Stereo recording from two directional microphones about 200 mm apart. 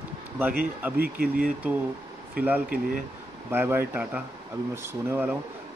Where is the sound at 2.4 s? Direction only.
10° right (ahead or behind).